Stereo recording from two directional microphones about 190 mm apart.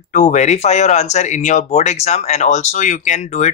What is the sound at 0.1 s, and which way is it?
Speech, 40° left (ahead or behind).